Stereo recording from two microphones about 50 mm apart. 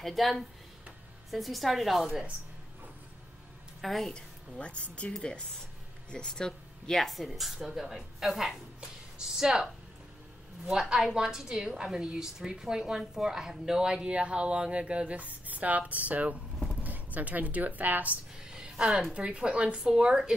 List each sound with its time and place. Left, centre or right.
0.0 s a woman's voice: centre
3.8 s a woman's voice: centre
4.1 s a woman's voice: left
7.0 s a woman's voice: centre
10.7 s a woman's voice: centre; by 18.2 s right
18.5 s a sound: centre
19.1 s a woman's voice: centre